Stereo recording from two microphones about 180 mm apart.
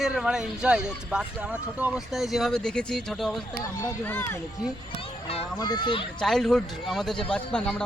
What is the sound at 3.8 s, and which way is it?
Speech, 15° left (ahead or behind).